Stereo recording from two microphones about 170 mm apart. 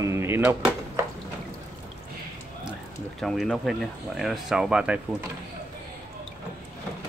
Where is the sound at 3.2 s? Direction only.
Centre (ahead or behind).